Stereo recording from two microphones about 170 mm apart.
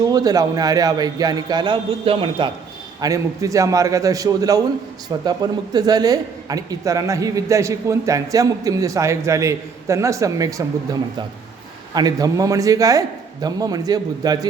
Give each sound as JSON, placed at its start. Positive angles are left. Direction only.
{"t": 0.0, "sound": "a woman's voice", "side_deg": -20}
{"t": 3.0, "sound": "a woman's voice", "side_deg": -20}
{"t": 11.9, "sound": "a woman's voice", "side_deg": -20}